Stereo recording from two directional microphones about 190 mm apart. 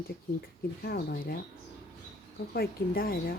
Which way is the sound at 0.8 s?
55° left (ahead or behind).